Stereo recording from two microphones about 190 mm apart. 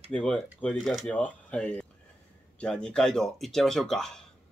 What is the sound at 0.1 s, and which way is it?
Speech, 5° left (ahead or behind).